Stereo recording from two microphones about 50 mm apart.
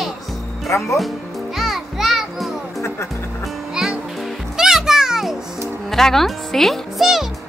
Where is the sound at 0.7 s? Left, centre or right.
Left.